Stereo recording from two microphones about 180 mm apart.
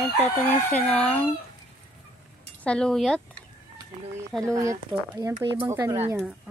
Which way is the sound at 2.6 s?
5° left (ahead or behind).